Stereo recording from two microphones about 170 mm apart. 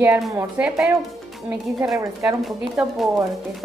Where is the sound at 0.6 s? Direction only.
Centre (ahead or behind).